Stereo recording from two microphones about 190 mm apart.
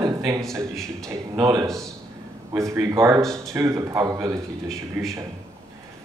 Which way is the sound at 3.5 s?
15° right (ahead or behind).